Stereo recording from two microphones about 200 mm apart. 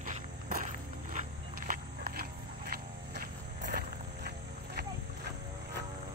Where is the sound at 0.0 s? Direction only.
40° right (ahead or behind).